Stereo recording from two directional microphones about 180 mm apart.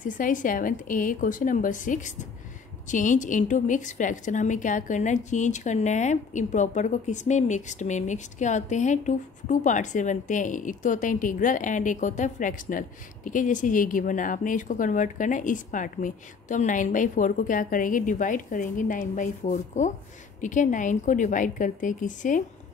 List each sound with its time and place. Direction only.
0.0 s a woman's voice: 45° left (ahead or behind)